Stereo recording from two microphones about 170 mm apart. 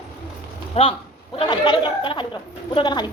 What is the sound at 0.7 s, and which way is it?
A woman's voice, 35° left (ahead or behind).